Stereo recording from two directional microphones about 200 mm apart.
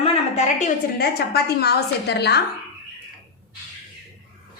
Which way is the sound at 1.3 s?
55° left (ahead or behind).